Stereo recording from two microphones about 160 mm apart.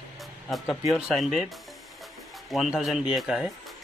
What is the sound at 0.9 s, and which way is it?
Speech, centre (ahead or behind).